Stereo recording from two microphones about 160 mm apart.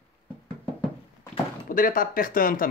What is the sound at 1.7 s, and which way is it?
Speech, 60° left (ahead or behind).